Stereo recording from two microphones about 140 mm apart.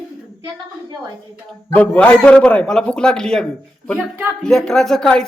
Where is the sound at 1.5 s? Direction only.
10° left (ahead or behind).